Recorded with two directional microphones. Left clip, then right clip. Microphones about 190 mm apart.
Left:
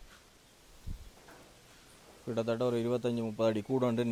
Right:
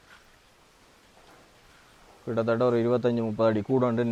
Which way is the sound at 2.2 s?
15° right (ahead or behind).